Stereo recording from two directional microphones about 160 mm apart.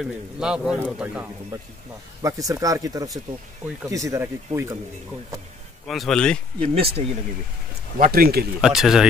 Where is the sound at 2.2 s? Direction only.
20° right (ahead or behind).